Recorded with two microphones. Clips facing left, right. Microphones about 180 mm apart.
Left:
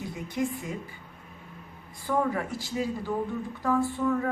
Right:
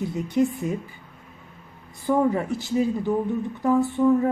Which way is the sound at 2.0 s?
20° right (ahead or behind).